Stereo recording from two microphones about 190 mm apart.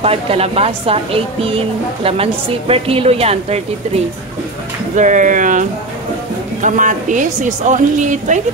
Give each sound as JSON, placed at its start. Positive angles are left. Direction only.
{"t": 0.0, "sound": "a woman's voice", "side_deg": -30}
{"t": 2.7, "sound": "a woman's voice", "side_deg": -30}